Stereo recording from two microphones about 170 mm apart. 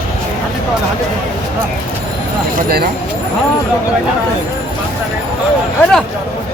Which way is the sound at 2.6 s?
65° right (ahead or behind).